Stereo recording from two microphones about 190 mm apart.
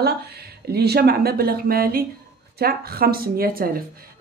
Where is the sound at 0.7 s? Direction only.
55° right (ahead or behind).